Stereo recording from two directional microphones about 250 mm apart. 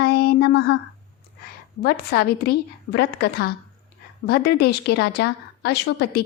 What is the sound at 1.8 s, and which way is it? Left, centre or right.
A woman's voice, left.